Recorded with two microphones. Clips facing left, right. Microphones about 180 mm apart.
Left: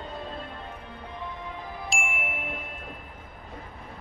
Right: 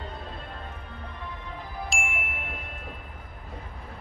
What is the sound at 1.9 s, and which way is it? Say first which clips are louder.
Ding: left 2 dB; centre (ahead or behind).